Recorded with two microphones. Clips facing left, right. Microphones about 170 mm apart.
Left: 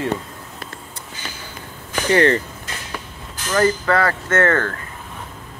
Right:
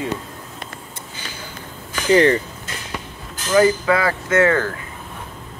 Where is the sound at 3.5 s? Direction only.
10° right (ahead or behind).